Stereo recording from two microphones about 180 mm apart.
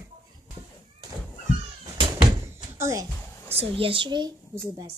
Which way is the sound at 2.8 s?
15° right (ahead or behind).